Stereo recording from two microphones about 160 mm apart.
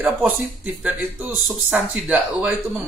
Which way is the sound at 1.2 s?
10° right (ahead or behind).